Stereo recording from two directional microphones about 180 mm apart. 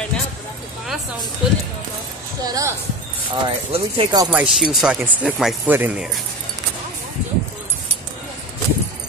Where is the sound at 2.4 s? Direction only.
20° right (ahead or behind).